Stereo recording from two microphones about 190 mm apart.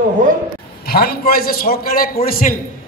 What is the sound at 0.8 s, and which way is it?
A man's voice, 55° left (ahead or behind).